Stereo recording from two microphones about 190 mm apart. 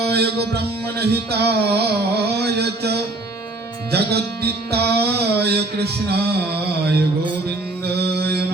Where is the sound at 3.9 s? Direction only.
55° right (ahead or behind).